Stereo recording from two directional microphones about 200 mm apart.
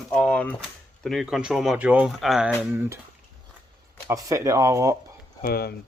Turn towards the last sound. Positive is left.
turn(degrees=50)  # may be behind; listen again after turning